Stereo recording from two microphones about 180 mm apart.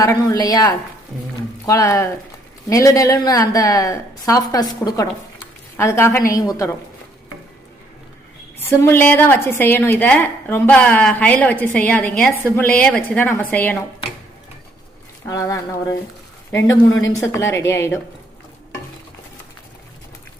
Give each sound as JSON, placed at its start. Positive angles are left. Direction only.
{"t": 0.0, "sound": "a woman's voice", "side_deg": 20}
{"t": 8.5, "sound": "a woman's voice", "side_deg": 10}
{"t": 15.3, "sound": "a woman's voice", "side_deg": 20}